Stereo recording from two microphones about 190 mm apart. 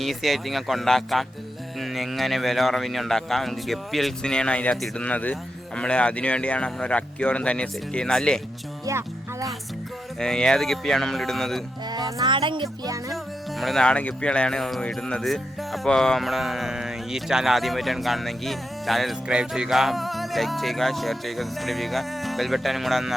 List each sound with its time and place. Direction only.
0.0 s speech: centre (ahead or behind)
8.9 s music: 15° right (ahead or behind)
10.2 s speech: 5° left (ahead or behind)
11.9 s speech: 20° right (ahead or behind)
13.6 s speech: centre (ahead or behind)